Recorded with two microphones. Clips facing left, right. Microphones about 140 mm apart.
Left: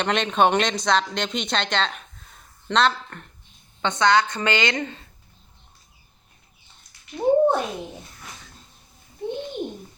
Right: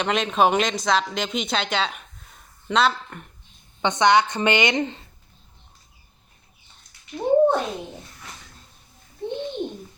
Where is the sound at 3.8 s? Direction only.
20° right (ahead or behind).